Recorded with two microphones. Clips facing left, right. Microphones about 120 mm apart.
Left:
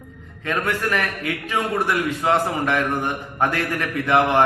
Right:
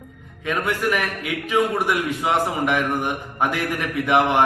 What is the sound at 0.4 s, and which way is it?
Speech, 10° right (ahead or behind).